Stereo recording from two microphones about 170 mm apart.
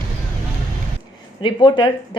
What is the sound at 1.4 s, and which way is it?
Speech, 25° left (ahead or behind).